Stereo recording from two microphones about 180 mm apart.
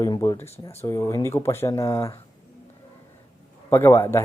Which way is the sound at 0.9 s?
15° left (ahead or behind).